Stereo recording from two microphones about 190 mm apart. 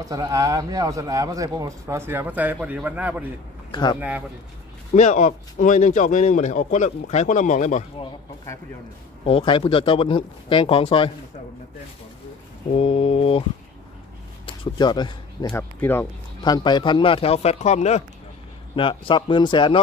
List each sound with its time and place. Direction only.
0.0 s a man's voice: 15° right (ahead or behind)
3.7 s speech: 25° left (ahead or behind)
4.9 s speech: 40° left (ahead or behind)
9.2 s speech: 30° left (ahead or behind)
12.7 s speech: 30° left (ahead or behind)
14.4 s speech: 25° left (ahead or behind)
15.5 s speech: 10° left (ahead or behind)